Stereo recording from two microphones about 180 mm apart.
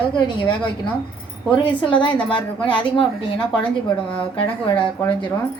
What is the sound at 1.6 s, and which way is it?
A woman's voice, 25° left (ahead or behind).